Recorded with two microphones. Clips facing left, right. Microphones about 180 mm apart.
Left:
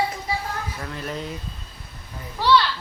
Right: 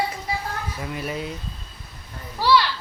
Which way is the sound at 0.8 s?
10° right (ahead or behind).